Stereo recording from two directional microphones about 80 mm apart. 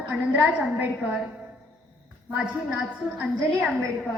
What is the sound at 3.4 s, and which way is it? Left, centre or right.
Speech, centre.